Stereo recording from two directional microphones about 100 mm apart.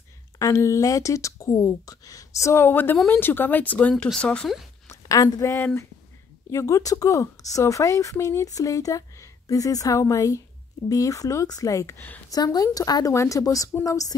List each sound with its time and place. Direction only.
0.4 s speech: 30° left (ahead or behind); by 4.5 s 10° left (ahead or behind)
4.8 s a woman's voice: 30° left (ahead or behind)